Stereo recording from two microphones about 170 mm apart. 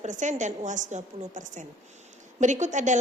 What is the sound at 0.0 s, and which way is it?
A woman's voice, 45° right (ahead or behind).